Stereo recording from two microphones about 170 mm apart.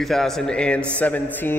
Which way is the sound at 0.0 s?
Centre (ahead or behind).